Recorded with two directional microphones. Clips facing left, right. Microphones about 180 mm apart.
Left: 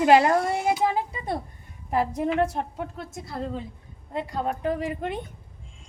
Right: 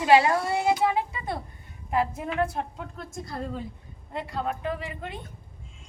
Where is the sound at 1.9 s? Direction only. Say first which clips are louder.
Left 2 dB; 40° left (ahead or behind).